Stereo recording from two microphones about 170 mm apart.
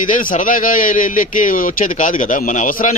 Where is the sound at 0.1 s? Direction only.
50° left (ahead or behind).